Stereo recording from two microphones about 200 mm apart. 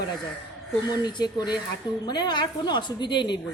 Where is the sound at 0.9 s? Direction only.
20° left (ahead or behind).